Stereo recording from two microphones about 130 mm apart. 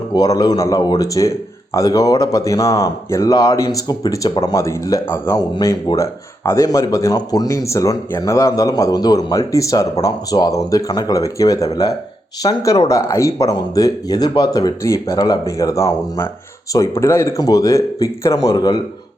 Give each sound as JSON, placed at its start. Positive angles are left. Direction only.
{"t": 0.1, "sound": "speech", "side_deg": 30}
{"t": 5.4, "sound": "speech", "side_deg": 30}